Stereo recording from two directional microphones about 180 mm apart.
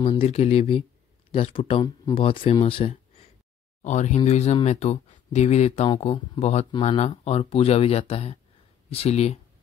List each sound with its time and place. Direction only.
0.0 s speech: 30° left (ahead or behind)